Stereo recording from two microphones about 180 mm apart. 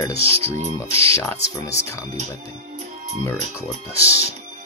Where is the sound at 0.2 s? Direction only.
30° right (ahead or behind).